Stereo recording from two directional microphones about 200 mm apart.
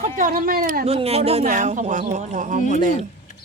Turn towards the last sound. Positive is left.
turn(degrees=-35)  # may be behind; listen again after turning